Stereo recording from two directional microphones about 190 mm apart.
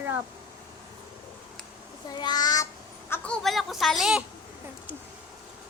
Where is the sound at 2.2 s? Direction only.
20° left (ahead or behind).